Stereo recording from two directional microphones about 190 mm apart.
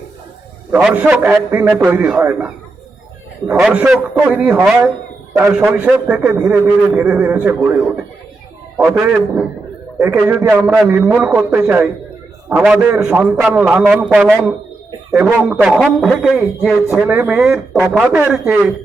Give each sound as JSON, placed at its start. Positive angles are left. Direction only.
{"t": 0.7, "sound": "a man's voice", "side_deg": -5}
{"t": 8.8, "sound": "a man's voice", "side_deg": -5}